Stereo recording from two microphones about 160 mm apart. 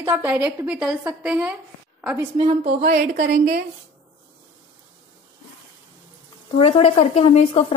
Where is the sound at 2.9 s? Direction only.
70° right (ahead or behind).